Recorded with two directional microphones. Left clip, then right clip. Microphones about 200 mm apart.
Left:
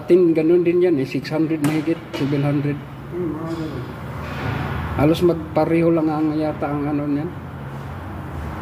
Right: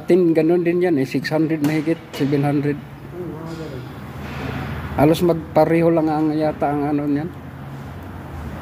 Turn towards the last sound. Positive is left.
turn(degrees=-50)  # may be behind; listen again after turning